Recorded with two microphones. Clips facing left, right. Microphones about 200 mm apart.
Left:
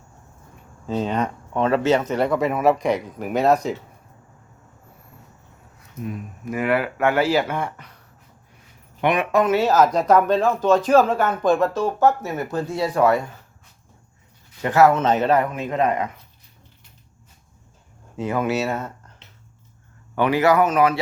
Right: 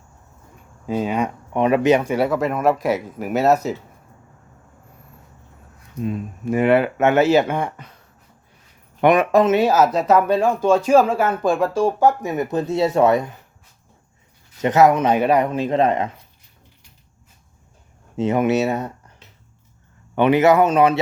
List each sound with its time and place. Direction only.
0.9 s speech: 10° right (ahead or behind)
6.0 s speech: 25° right (ahead or behind)
9.0 s speech: 45° right (ahead or behind)
9.4 s speech: 20° right (ahead or behind)
14.6 s speech: 20° right (ahead or behind)
15.4 s speech: 30° right (ahead or behind)
18.2 s speech: 25° right (ahead or behind)
20.1 s speech: 20° right (ahead or behind)